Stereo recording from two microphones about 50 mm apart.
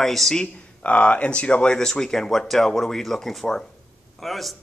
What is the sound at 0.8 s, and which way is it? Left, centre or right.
Speech, left.